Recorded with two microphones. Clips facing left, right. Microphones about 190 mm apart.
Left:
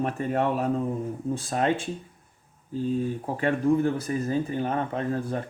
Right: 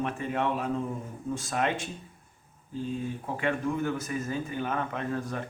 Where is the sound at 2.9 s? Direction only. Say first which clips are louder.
Left 6 dB; 35° left (ahead or behind).